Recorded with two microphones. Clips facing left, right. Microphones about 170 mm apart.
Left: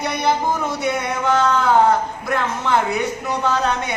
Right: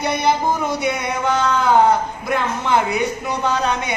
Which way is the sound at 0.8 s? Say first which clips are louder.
Even; 15° right (ahead or behind).